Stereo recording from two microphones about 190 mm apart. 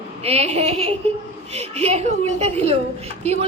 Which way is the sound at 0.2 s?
30° right (ahead or behind).